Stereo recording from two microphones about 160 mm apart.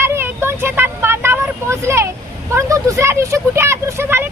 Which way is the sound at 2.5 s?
20° right (ahead or behind).